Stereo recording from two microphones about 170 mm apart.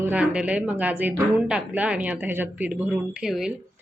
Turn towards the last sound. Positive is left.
turn(degrees=-5)  # may be behind; listen again after turning